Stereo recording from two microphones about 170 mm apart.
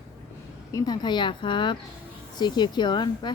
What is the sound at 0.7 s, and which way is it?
Speech, 20° left (ahead or behind).